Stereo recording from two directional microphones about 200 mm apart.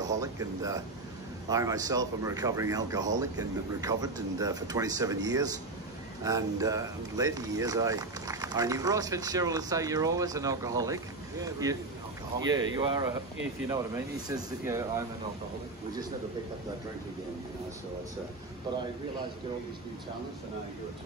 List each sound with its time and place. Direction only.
0.0 s speech: 15° right (ahead or behind)